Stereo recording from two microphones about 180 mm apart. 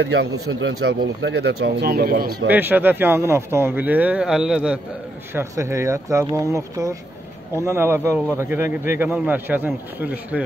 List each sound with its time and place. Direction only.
0.0 s speech: 70° right (ahead or behind)
2.4 s speech: 10° right (ahead or behind)
5.3 s speech: 15° right (ahead or behind)